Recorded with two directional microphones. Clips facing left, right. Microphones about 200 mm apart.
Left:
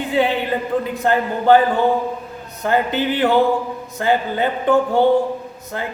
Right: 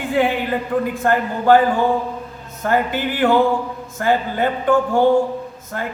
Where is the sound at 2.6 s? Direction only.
20° left (ahead or behind).